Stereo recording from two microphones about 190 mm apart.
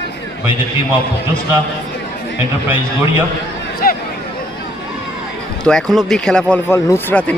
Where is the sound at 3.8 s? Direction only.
50° left (ahead or behind).